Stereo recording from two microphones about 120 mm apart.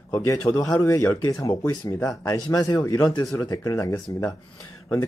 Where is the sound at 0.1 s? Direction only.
25° left (ahead or behind).